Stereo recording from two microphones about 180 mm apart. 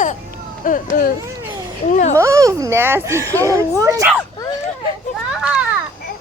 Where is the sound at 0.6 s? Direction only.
45° left (ahead or behind).